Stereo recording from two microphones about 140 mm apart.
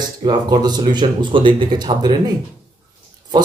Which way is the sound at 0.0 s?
30° right (ahead or behind).